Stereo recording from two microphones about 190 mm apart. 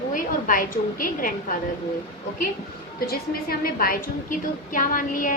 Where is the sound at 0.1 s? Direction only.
45° left (ahead or behind).